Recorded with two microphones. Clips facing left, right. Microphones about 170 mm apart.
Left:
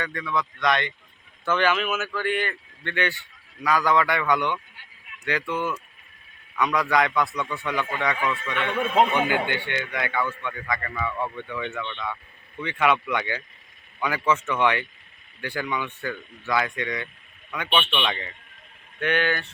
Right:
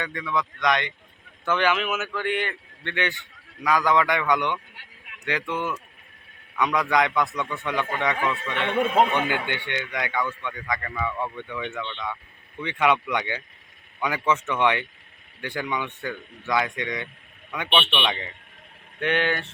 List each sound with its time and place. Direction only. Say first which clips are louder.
0.0 s a man's voice: even; 20° right (ahead or behind)